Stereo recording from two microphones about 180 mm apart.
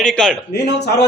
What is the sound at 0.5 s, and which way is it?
Speech, 70° left (ahead or behind).